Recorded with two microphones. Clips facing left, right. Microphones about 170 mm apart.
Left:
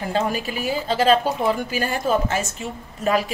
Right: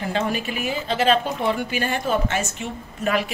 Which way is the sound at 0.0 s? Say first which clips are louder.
Left 1 dB; 35° left (ahead or behind).